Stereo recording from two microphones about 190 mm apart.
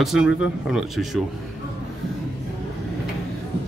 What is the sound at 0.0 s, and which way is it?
A man's voice, centre (ahead or behind).